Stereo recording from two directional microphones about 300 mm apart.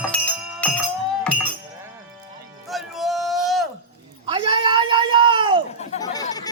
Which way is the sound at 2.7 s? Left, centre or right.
Centre.